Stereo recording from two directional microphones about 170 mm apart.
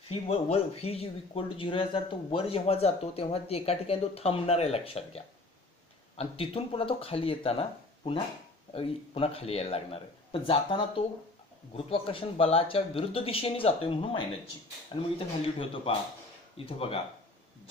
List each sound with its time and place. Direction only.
0.1 s speech: 35° left (ahead or behind)